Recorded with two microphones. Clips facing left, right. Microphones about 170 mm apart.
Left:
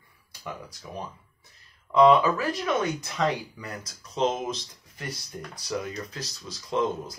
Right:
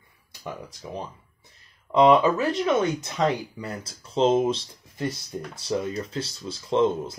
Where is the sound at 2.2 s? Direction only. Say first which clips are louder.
Right 4 dB; 25° right (ahead or behind).